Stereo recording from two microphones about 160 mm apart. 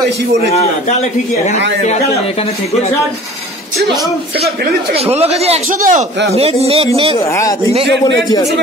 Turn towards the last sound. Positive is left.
turn(degrees=20)  # may be behind; listen again after turning